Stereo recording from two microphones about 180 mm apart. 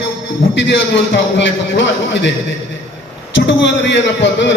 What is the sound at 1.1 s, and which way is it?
Speech, 90° left.